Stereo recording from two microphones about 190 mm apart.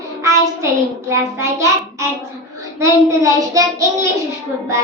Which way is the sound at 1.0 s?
15° right (ahead or behind).